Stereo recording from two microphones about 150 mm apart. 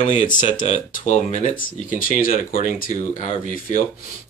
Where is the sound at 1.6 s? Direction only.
65° left (ahead or behind).